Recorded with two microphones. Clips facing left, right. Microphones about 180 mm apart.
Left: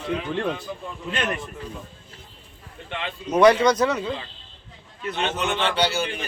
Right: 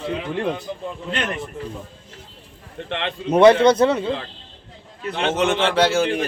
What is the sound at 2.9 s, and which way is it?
Speech, 70° right (ahead or behind).